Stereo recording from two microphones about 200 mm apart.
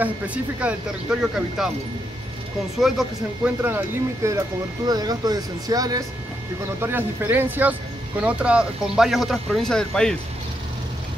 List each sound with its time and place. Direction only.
0.0 s speech: 5° right (ahead or behind)
2.8 s speech: 5° right (ahead or behind)